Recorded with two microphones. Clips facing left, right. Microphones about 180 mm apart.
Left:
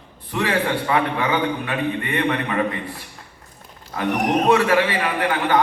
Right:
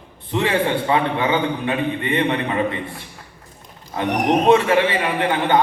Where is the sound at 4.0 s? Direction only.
25° right (ahead or behind).